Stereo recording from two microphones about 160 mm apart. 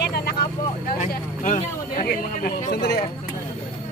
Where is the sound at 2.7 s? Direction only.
90° left.